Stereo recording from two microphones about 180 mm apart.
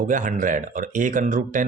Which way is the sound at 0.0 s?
45° right (ahead or behind).